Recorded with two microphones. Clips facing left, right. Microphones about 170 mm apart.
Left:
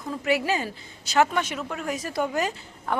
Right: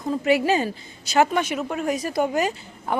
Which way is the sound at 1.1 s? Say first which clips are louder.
Right 3 dB; 15° right (ahead or behind).